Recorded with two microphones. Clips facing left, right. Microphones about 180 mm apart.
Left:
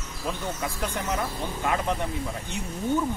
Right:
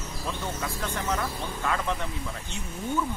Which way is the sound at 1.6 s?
20° left (ahead or behind).